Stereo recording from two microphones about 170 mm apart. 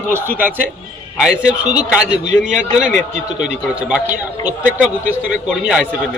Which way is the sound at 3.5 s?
5° right (ahead or behind).